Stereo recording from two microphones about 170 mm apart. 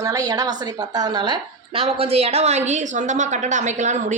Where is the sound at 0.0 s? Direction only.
20° right (ahead or behind).